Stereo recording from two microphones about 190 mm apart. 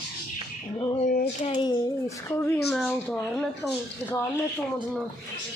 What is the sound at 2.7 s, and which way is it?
A woman's voice, 5° left (ahead or behind).